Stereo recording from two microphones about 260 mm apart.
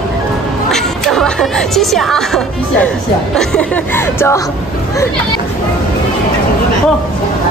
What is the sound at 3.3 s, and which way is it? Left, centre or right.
Speech, centre.